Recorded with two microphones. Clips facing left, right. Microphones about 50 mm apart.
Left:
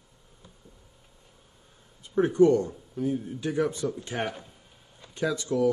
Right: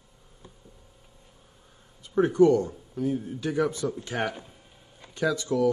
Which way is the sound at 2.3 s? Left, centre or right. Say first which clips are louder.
Even; left.